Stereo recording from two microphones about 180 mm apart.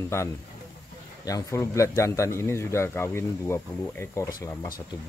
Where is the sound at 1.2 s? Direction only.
15° left (ahead or behind).